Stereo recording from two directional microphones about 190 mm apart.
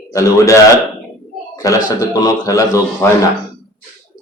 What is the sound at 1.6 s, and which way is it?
Speech, 15° left (ahead or behind).